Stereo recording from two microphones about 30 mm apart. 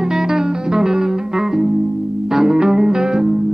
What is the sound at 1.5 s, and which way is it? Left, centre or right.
Music, centre.